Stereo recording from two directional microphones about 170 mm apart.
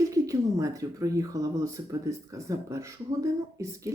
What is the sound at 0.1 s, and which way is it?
Speech, 20° right (ahead or behind).